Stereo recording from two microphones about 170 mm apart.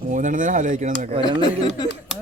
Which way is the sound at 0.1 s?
50° right (ahead or behind).